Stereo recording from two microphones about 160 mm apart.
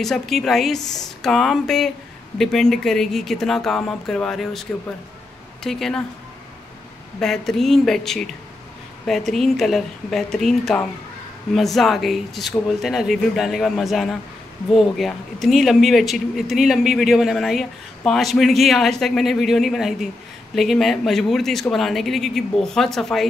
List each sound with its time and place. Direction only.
0.0 s speech: centre (ahead or behind)
7.2 s speech: 5° left (ahead or behind)